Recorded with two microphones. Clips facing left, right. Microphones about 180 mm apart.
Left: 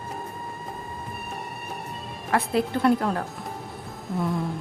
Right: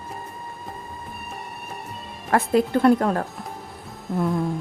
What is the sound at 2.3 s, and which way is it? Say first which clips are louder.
Speech: right 4 dB; 45° right (ahead or behind).